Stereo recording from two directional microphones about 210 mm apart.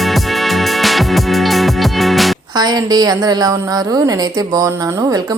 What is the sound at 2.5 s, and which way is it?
A woman's voice, 20° right (ahead or behind).